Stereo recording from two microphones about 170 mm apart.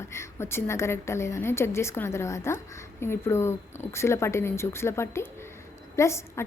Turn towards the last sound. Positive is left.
turn(degrees=15)  # may be behind; listen again after turning